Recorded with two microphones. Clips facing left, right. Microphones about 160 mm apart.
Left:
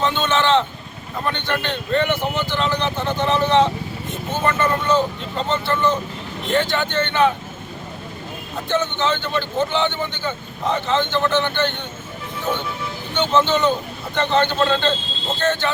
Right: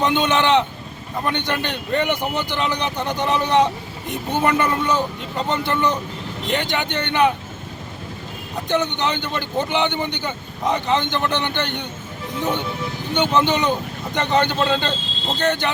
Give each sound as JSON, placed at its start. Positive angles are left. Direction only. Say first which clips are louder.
{"t": 0.0, "sound": "speech", "louder": "right 1 dB", "side_deg": -15}
{"t": 8.7, "sound": "speech", "louder": "even", "side_deg": -15}
{"t": 13.1, "sound": "speech", "louder": "left 1 dB", "side_deg": -15}